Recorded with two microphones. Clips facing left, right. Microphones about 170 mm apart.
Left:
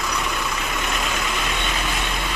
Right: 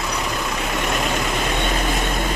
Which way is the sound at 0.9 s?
40° right (ahead or behind).